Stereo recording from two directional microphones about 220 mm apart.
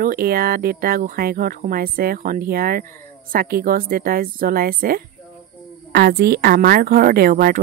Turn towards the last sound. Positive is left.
turn(degrees=-45)  # may be behind; listen again after turning